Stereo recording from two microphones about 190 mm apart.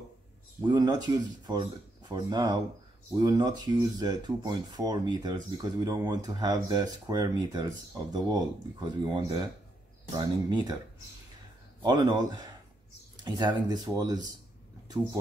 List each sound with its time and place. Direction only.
0.7 s speech: 20° right (ahead or behind)
11.8 s speech: 20° right (ahead or behind)